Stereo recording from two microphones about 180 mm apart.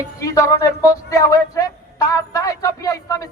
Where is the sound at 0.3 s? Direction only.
20° left (ahead or behind).